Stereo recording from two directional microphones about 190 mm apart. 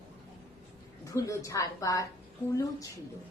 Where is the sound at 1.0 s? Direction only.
15° left (ahead or behind).